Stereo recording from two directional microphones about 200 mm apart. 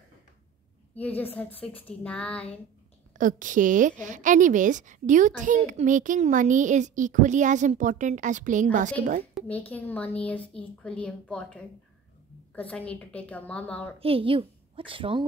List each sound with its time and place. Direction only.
0.9 s a woman's voice: 10° left (ahead or behind)
3.1 s a woman's voice: 40° right (ahead or behind)
9.3 s a woman's voice: 10° left (ahead or behind)
13.9 s a woman's voice: 30° right (ahead or behind)